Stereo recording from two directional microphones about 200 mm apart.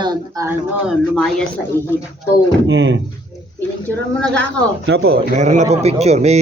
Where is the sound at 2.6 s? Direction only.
70° right (ahead or behind).